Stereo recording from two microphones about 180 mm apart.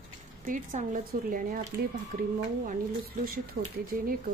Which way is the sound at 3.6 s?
60° right (ahead or behind).